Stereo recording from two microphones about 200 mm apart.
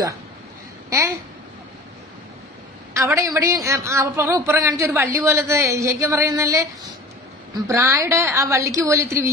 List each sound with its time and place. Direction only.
0.8 s speech: 15° right (ahead or behind)
2.9 s a woman's voice: 15° right (ahead or behind)